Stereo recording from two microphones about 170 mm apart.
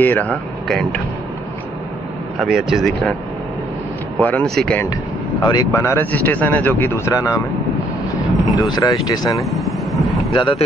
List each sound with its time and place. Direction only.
0.0 s speech: 10° left (ahead or behind)
2.4 s speech: centre (ahead or behind)
4.2 s speech: 10° left (ahead or behind)
5.4 s speech: 25° left (ahead or behind)
8.5 s speech: 20° left (ahead or behind)
9.5 s vehicle: centre (ahead or behind)
10.3 s speech: 30° left (ahead or behind)